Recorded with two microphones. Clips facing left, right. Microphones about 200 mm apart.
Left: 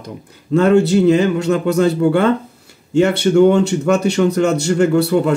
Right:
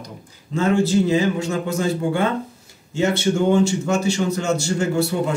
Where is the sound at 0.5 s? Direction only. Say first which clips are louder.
Left 6 dB; 65° left (ahead or behind).